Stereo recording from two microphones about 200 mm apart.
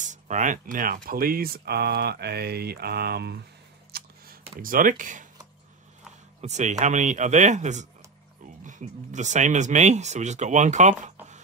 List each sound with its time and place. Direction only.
0.0 s speech: 40° right (ahead or behind); by 3.3 s 55° right (ahead or behind)
3.9 s a sound: 50° right (ahead or behind)
4.6 s speech: 45° right (ahead or behind)
6.4 s speech: 35° right (ahead or behind)